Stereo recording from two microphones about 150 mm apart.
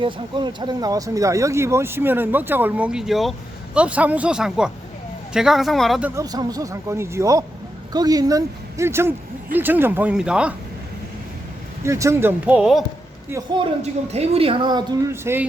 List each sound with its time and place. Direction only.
0.0 s speech: 30° right (ahead or behind); by 6.0 s centre (ahead or behind)
6.0 s speech: 10° right (ahead or behind)
6.2 s speech: 25° right (ahead or behind); by 10.5 s 5° right (ahead or behind)
11.8 s speech: 20° right (ahead or behind)
14.1 s a woman's voice: 40° right (ahead or behind)
15.1 s speech: 15° right (ahead or behind)